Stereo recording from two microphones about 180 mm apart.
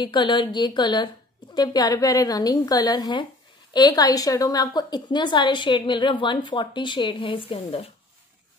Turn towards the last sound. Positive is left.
turn(degrees=35)  # may be behind; listen again after turning